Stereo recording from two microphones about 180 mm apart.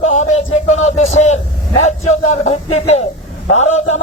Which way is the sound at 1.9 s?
40° left (ahead or behind).